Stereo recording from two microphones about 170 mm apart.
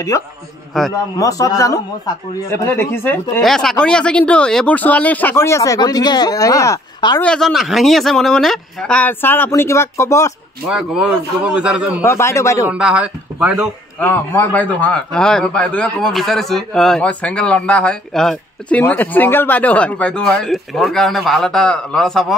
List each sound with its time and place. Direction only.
0.1 s a man's voice: 20° left (ahead or behind)
0.7 s a man's voice: centre (ahead or behind)
1.1 s a man's voice: 20° left (ahead or behind)
7.2 s a man's voice: 5° left (ahead or behind)
10.7 s a man's voice: 5° right (ahead or behind)
12.0 s a man's voice: 15° left (ahead or behind)
12.6 s speech: 5° right (ahead or behind)
13.9 s a man's voice: 10° left (ahead or behind)